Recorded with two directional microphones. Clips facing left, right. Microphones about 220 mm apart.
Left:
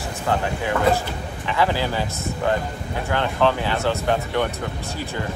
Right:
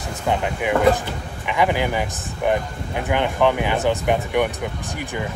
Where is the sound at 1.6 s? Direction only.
15° right (ahead or behind).